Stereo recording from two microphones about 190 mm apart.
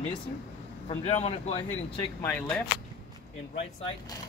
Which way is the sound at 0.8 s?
30° left (ahead or behind).